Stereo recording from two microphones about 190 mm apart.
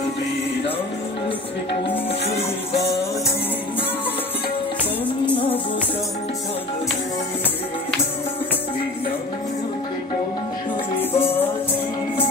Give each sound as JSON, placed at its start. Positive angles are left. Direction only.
{"t": 11.0, "sound": "music", "side_deg": 10}